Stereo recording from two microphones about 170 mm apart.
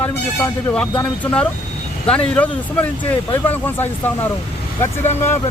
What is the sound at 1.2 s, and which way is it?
Speech, 5° left (ahead or behind).